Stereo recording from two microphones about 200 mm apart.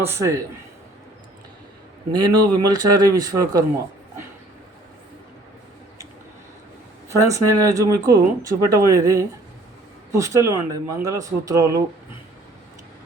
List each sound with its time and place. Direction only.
0.0 s speech: 15° right (ahead or behind)
2.1 s speech: 20° right (ahead or behind)
7.2 s speech: 15° right (ahead or behind)